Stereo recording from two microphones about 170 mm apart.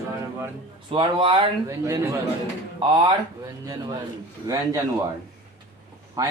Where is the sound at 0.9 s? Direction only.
30° right (ahead or behind).